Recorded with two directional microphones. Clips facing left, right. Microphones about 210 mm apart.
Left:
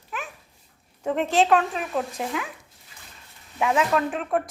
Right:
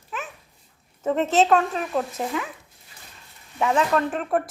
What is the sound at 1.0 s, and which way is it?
Speech, centre (ahead or behind).